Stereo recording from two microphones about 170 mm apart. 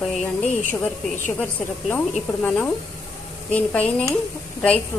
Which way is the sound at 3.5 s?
10° left (ahead or behind).